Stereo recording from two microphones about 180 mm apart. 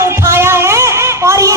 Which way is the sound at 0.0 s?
15° right (ahead or behind).